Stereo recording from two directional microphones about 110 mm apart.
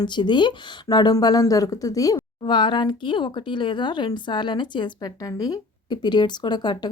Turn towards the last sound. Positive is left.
turn(degrees=40)  # may be behind; listen again after turning